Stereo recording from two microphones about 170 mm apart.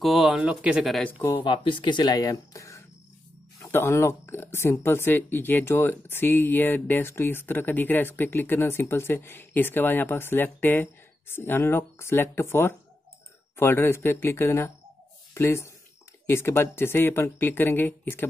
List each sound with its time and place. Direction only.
0.0 s speech: centre (ahead or behind)
1.4 s speech: 30° left (ahead or behind); by 18.2 s 10° left (ahead or behind)